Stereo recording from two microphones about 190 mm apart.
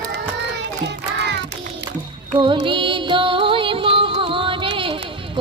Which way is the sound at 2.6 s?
25° right (ahead or behind).